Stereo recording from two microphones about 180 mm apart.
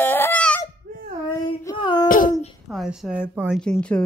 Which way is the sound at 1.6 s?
20° left (ahead or behind).